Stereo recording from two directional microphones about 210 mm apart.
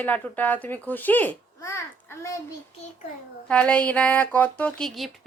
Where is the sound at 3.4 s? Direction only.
5° left (ahead or behind).